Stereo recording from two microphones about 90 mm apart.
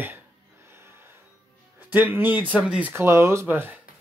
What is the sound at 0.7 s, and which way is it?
Music, 25° right (ahead or behind).